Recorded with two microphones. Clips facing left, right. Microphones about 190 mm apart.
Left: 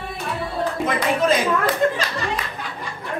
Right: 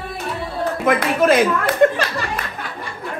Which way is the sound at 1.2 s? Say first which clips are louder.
Right 5 dB; 60° right (ahead or behind).